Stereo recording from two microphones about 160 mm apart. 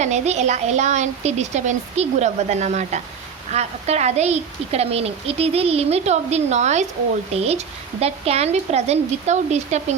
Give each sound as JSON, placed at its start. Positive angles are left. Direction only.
{"t": 0.0, "sound": "a woman's voice", "side_deg": -45}